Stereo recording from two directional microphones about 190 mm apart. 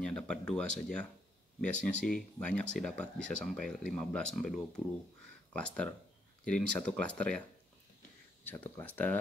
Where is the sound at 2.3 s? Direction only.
5° left (ahead or behind).